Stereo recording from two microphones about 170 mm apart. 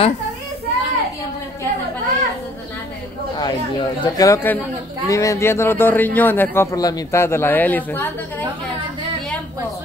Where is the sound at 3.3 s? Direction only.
25° left (ahead or behind).